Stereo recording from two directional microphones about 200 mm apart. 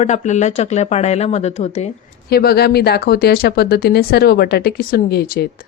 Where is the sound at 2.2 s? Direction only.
50° left (ahead or behind).